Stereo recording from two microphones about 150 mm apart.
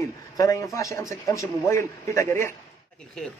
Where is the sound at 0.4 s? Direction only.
20° left (ahead or behind).